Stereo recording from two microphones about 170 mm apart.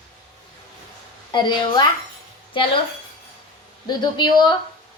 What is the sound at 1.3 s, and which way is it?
A child's voice, 25° left (ahead or behind).